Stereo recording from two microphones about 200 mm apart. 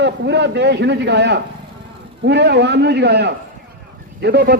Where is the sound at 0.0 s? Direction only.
60° right (ahead or behind).